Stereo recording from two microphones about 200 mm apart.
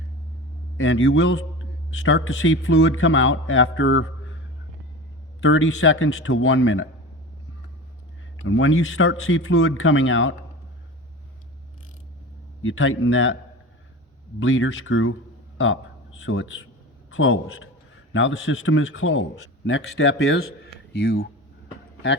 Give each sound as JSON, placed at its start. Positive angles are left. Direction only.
{"t": 0.8, "sound": "a man's voice", "side_deg": 65}
{"t": 5.4, "sound": "speech", "side_deg": 80}
{"t": 8.4, "sound": "speech", "side_deg": 75}
{"t": 12.6, "sound": "a man's voice", "side_deg": 90}
{"t": 14.3, "sound": "a man's voice", "side_deg": 80}
{"t": 16.2, "sound": "a man's voice", "side_deg": 90}
{"t": 18.1, "sound": "a man's voice", "side_deg": 75}